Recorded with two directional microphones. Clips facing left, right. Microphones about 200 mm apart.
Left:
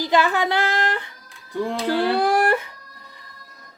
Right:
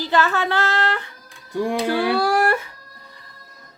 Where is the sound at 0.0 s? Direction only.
15° left (ahead or behind).